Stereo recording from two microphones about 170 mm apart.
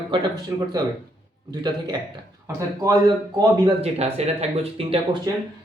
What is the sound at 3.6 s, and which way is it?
Speech, 35° right (ahead or behind).